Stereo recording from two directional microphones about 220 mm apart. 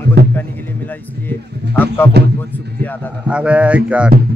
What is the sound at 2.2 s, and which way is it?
Speech, 50° right (ahead or behind).